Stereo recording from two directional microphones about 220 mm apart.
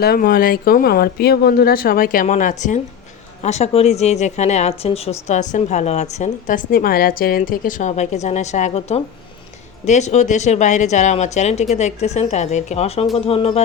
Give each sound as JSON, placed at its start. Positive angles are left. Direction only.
{"t": 0.0, "sound": "a woman's voice", "side_deg": 45}